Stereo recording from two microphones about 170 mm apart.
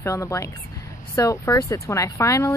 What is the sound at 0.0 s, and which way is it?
Speech, 20° left (ahead or behind).